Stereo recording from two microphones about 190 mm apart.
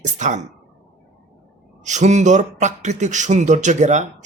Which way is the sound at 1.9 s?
40° right (ahead or behind).